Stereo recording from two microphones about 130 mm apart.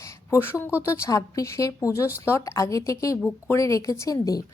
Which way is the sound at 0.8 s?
20° left (ahead or behind).